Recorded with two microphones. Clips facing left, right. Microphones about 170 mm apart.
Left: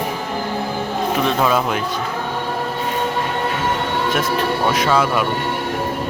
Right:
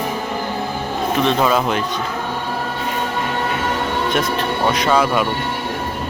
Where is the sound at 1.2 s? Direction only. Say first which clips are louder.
Right 2 dB; centre (ahead or behind).